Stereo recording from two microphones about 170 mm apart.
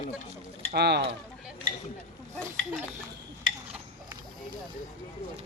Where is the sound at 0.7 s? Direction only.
80° right.